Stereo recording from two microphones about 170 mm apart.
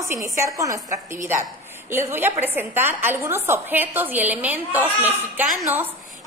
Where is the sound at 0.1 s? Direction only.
15° right (ahead or behind).